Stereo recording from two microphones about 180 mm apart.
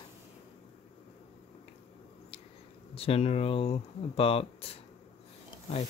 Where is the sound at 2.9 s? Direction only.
35° left (ahead or behind).